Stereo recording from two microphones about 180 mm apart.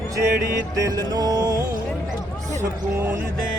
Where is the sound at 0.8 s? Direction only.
20° right (ahead or behind).